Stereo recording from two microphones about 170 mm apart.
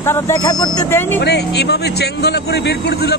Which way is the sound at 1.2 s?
80° left.